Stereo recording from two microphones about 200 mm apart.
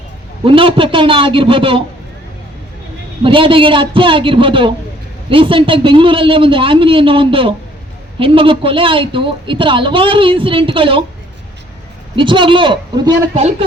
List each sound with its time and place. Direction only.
0.4 s a woman's voice: 25° right (ahead or behind)
3.2 s a woman's voice: 25° right (ahead or behind)
12.1 s a woman's voice: 25° right (ahead or behind)